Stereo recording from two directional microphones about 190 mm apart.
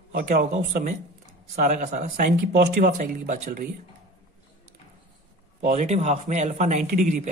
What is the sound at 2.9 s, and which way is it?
Speech, 45° right (ahead or behind).